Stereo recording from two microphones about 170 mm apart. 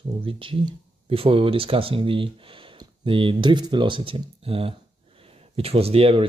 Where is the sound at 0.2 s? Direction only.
30° right (ahead or behind).